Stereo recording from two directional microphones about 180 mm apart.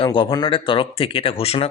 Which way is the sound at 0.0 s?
30° left (ahead or behind).